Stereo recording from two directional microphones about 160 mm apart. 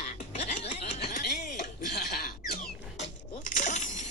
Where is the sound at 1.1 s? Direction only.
55° left (ahead or behind).